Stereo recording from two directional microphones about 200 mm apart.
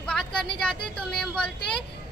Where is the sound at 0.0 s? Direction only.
5° left (ahead or behind).